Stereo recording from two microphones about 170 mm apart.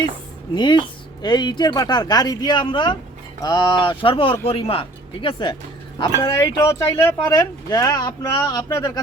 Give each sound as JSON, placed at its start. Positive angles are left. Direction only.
{"t": 0.5, "sound": "speech", "side_deg": 30}